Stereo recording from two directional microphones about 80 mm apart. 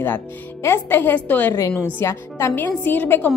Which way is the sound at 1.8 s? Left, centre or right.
Left.